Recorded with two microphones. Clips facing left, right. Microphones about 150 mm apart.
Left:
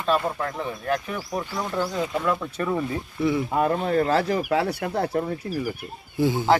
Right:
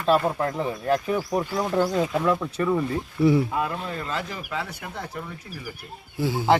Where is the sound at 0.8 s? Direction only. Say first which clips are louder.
Right 4 dB; 25° right (ahead or behind).